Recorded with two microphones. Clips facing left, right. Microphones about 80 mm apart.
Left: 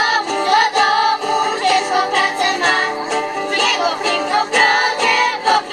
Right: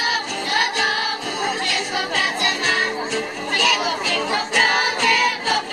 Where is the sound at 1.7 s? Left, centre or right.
Left.